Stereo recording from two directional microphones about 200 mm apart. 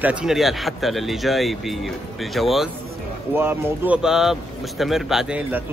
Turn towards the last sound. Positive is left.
turn(degrees=-10)  # may be behind; listen again after turning